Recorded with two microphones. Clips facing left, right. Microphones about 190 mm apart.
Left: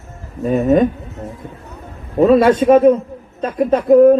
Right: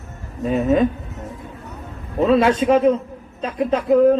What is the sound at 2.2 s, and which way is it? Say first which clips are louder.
Speech: left 5 dB; 50° left (ahead or behind).